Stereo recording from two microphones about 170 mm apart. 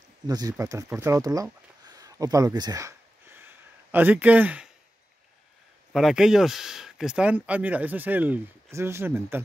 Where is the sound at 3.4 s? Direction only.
10° right (ahead or behind).